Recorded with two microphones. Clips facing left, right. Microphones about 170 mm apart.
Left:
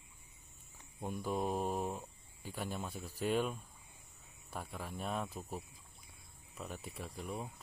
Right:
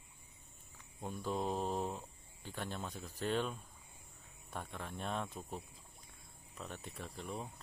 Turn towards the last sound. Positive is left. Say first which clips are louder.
# left 1 dB
turn(degrees=5)  # may be behind; listen again after turning